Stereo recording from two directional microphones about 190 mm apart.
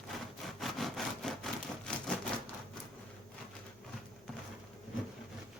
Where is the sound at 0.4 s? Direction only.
Centre (ahead or behind).